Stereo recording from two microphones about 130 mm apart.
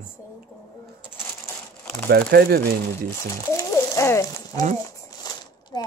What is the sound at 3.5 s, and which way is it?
Bird, 20° left (ahead or behind).